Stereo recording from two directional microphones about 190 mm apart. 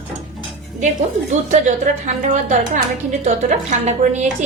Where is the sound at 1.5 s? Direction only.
40° right (ahead or behind).